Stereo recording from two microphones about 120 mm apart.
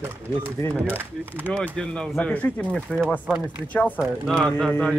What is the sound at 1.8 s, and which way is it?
Speech, 5° left (ahead or behind).